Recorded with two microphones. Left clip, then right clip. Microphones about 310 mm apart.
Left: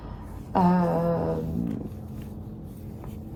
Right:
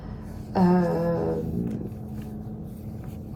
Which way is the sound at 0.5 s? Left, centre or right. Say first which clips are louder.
Even; centre.